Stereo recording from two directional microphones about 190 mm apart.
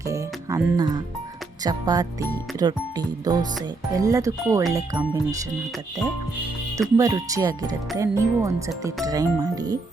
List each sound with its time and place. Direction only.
0.0 s music: 15° right (ahead or behind)
1.6 s speech: 20° right (ahead or behind)
6.7 s speech: 15° right (ahead or behind)